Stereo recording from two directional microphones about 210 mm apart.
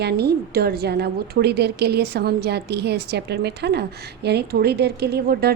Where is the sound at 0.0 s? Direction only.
50° right (ahead or behind).